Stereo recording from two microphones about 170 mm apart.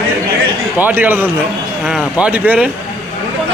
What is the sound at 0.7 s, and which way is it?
A man's voice, 10° right (ahead or behind).